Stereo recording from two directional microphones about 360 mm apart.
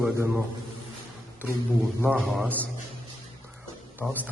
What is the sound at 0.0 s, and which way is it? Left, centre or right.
Speech, centre.